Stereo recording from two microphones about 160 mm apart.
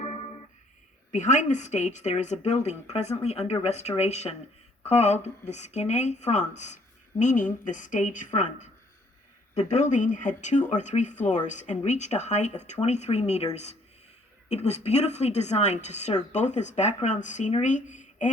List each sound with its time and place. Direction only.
0.0 s music: 50° left (ahead or behind)
1.1 s speech: 50° left (ahead or behind)